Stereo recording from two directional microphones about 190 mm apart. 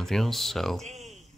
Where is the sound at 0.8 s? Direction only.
40° right (ahead or behind).